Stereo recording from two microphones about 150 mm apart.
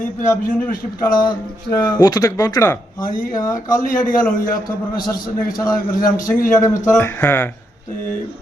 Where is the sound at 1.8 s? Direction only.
25° left (ahead or behind).